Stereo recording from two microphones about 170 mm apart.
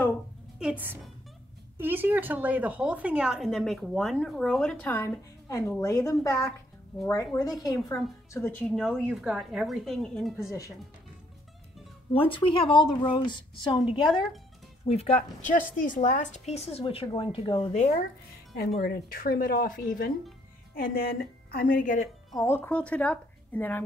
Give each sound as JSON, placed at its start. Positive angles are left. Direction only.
{"t": 0.6, "sound": "a woman's voice", "side_deg": -10}
{"t": 8.6, "sound": "a woman's voice", "side_deg": 0}
{"t": 12.1, "sound": "a woman's voice", "side_deg": 30}
{"t": 15.5, "sound": "a woman's voice", "side_deg": 50}
{"t": 18.8, "sound": "a woman's voice", "side_deg": 60}
{"t": 22.4, "sound": "a woman's voice", "side_deg": 15}